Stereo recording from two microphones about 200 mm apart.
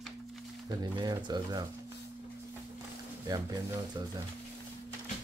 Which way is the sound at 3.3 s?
20° right (ahead or behind).